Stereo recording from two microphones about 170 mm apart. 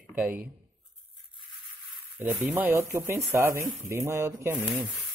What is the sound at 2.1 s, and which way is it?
Speech, 10° right (ahead or behind).